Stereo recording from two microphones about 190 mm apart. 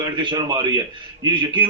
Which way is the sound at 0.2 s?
25° right (ahead or behind).